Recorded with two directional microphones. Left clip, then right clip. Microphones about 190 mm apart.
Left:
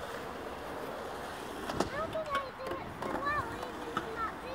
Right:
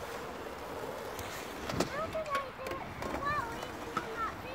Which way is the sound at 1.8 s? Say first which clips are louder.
Even; 35° right (ahead or behind).